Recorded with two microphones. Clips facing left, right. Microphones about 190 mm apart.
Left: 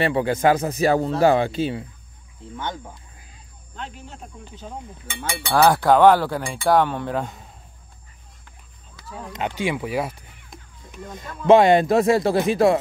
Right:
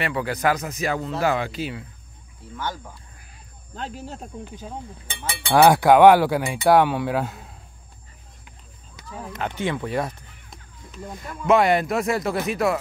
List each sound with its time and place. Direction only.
0.0 s speech: 25° left (ahead or behind)
3.7 s speech: 40° right (ahead or behind)
5.5 s speech: 10° right (ahead or behind)
9.6 s speech: 10° left (ahead or behind)
11.4 s speech: 25° left (ahead or behind)